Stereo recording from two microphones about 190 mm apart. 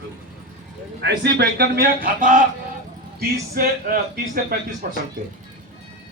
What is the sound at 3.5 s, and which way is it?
Speech, 50° right (ahead or behind).